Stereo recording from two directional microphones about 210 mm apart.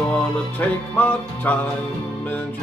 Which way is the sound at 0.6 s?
10° left (ahead or behind).